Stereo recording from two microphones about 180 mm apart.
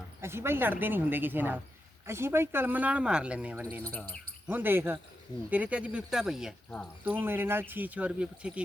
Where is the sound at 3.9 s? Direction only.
10° left (ahead or behind).